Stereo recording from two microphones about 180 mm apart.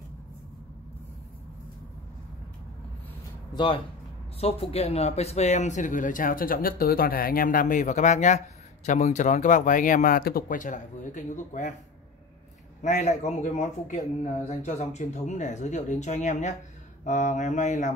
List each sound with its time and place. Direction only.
3.5 s speech: 25° left (ahead or behind); by 11.7 s 45° left (ahead or behind)
12.8 s speech: 40° left (ahead or behind)